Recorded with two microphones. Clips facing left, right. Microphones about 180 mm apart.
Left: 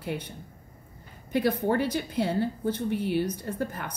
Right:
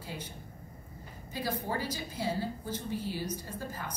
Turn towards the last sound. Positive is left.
turn(degrees=65)  # may be behind; listen again after turning